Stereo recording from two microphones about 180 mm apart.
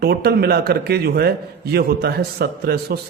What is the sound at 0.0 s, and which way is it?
A man's voice, 60° right (ahead or behind).